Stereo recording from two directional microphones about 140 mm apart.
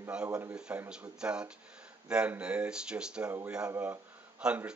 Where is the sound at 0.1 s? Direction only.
5° right (ahead or behind).